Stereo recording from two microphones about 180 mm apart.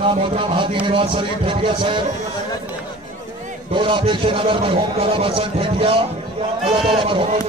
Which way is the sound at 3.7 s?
25° right (ahead or behind).